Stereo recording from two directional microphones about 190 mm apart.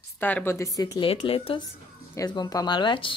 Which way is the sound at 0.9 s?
30° left (ahead or behind).